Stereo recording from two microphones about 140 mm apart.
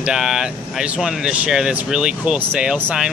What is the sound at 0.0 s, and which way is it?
Speech, 5° right (ahead or behind).